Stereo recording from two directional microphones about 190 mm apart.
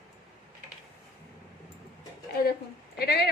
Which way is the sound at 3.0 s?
60° left (ahead or behind).